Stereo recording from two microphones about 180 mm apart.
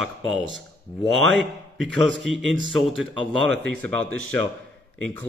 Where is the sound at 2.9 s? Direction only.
Centre (ahead or behind).